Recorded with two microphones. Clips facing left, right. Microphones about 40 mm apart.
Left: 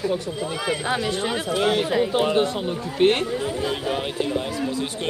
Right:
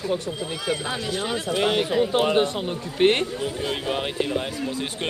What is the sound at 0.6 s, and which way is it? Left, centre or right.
Speech, left.